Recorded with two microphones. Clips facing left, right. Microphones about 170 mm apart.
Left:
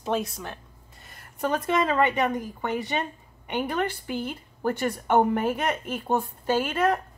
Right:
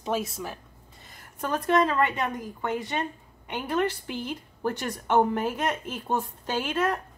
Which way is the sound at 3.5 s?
10° left (ahead or behind).